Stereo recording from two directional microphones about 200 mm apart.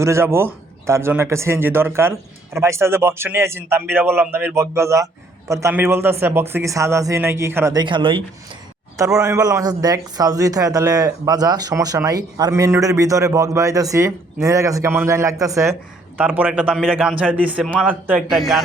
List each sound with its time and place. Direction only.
0.0 s a man's voice: 15° right (ahead or behind)